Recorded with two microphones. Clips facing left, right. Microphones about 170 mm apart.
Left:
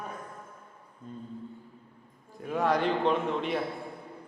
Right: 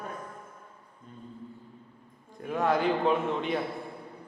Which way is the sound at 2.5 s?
Centre (ahead or behind).